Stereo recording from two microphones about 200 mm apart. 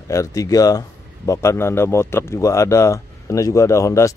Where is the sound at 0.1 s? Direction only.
15° left (ahead or behind).